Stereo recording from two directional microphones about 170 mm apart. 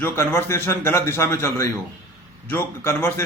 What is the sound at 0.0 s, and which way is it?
A man's voice, 15° left (ahead or behind).